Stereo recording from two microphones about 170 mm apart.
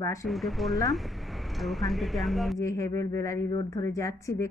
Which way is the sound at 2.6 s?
20° left (ahead or behind).